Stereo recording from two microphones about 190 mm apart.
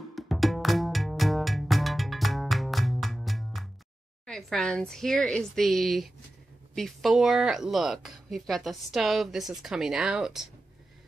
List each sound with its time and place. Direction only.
0.1 s music: centre (ahead or behind)
4.3 s speech: centre (ahead or behind)